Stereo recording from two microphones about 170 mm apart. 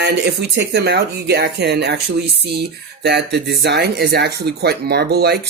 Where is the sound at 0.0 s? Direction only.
80° right.